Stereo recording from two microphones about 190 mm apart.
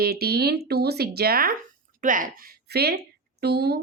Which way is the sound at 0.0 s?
55° right (ahead or behind).